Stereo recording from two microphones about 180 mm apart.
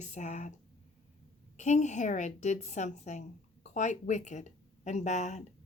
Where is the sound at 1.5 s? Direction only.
40° left (ahead or behind).